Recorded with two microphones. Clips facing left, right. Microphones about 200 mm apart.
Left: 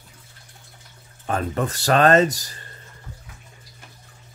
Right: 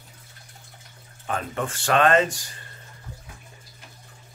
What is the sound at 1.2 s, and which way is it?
Speech, 40° left (ahead or behind).